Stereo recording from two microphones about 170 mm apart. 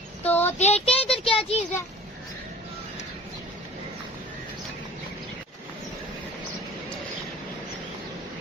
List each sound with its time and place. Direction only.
0.2 s child singing: 10° left (ahead or behind)
0.6 s child singing: 35° left (ahead or behind)